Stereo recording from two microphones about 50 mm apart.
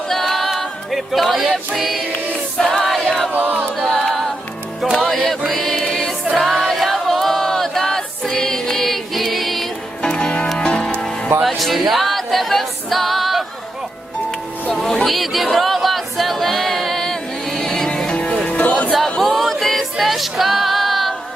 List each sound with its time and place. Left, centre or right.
0.1 s music: centre
2.6 s choir: centre
3.3 s choir: right
3.8 s a capella: centre
5.0 s music: centre
6.3 s choir: centre
10.0 s music: centre
11.4 s a capella: centre
14.7 s a sound: centre
18.1 s music: left
19.2 s music: centre